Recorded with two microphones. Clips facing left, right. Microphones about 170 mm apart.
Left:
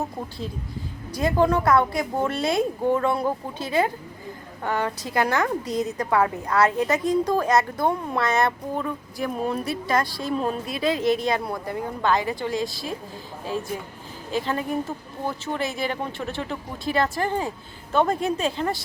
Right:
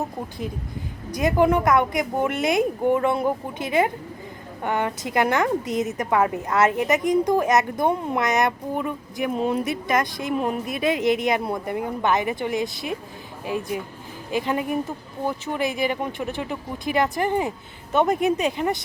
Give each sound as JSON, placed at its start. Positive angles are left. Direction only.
{"t": 1.1, "sound": "a woman's voice", "side_deg": -20}
{"t": 14.3, "sound": "speech", "side_deg": -15}